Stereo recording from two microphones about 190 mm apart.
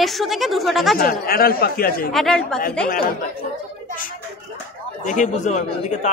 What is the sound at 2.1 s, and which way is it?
Speech, centre (ahead or behind).